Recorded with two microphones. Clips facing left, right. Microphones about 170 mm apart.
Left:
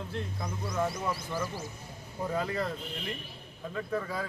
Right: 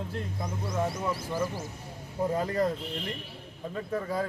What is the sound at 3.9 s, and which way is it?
Speech, 40° right (ahead or behind).